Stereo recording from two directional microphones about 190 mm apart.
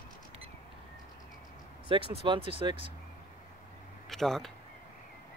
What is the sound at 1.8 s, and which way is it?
Speech, 30° right (ahead or behind).